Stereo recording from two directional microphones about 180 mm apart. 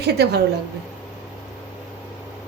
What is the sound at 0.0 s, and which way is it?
Speech, 65° right (ahead or behind).